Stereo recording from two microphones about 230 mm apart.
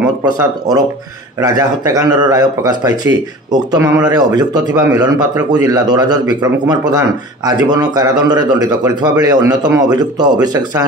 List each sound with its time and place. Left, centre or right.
0.2 s speech: centre